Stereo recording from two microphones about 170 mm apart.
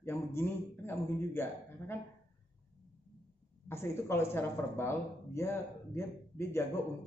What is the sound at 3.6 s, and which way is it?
Speech, 15° left (ahead or behind).